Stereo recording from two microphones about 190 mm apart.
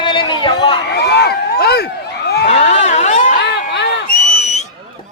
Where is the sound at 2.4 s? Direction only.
35° left (ahead or behind).